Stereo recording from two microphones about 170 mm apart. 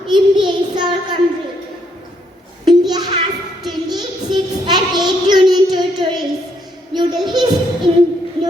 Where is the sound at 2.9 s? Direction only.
25° right (ahead or behind).